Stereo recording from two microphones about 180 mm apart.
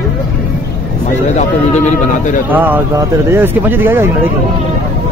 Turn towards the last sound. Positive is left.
turn(degrees=-10)  # may be behind; listen again after turning